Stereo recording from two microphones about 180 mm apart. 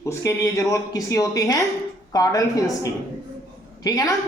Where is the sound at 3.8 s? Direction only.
20° left (ahead or behind).